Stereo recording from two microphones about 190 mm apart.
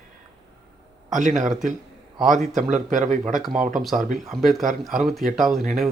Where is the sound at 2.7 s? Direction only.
40° right (ahead or behind).